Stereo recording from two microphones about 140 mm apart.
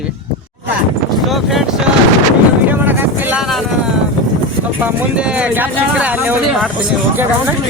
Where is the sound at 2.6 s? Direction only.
15° right (ahead or behind).